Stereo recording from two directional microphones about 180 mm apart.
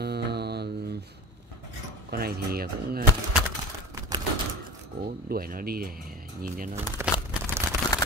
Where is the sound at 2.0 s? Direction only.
60° right (ahead or behind).